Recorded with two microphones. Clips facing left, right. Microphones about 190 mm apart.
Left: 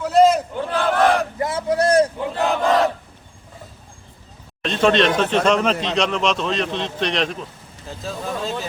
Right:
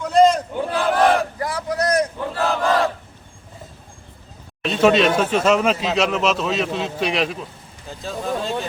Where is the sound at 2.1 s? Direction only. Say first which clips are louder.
Left 1 dB; 15° left (ahead or behind).